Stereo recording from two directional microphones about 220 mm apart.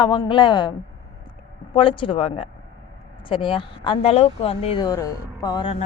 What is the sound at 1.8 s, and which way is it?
Speech, 25° left (ahead or behind).